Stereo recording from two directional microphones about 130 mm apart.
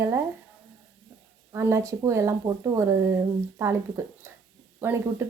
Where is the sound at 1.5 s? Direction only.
20° right (ahead or behind).